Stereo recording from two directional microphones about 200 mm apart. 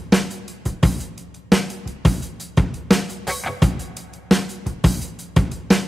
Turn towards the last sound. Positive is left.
turn(degrees=0)  # may be behind; listen again after turning